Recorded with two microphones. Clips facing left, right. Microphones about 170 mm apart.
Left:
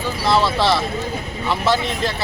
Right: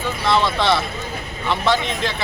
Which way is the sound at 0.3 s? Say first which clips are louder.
Left 1 dB; 5° left (ahead or behind).